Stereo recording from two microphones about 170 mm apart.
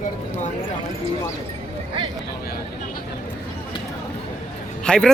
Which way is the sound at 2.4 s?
60° left (ahead or behind).